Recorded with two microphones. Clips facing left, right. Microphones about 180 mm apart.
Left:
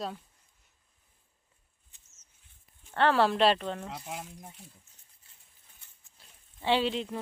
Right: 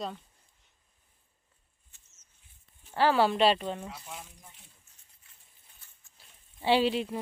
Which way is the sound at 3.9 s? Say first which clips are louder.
Left 5 dB; 75° left (ahead or behind).